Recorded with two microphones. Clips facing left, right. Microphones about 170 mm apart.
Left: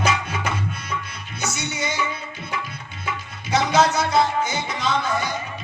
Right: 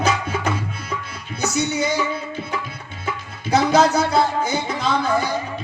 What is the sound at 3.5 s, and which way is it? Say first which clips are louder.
Music: right 3 dB; 35° right (ahead or behind).